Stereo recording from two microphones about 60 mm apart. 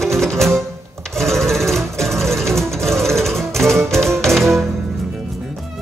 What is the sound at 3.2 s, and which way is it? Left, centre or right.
Music, centre.